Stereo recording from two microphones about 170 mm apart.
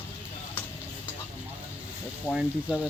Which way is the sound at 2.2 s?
Centre (ahead or behind).